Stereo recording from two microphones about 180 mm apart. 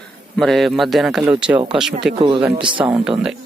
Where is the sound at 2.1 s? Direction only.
30° right (ahead or behind).